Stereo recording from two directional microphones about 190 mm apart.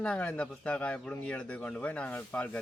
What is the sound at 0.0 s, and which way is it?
Speech, 5° left (ahead or behind).